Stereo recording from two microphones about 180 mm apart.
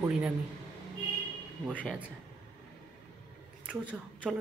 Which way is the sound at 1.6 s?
5° left (ahead or behind).